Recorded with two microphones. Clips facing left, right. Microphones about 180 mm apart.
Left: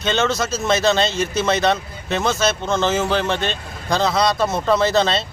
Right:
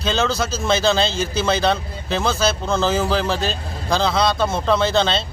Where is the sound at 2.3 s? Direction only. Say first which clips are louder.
Even; 30° right (ahead or behind).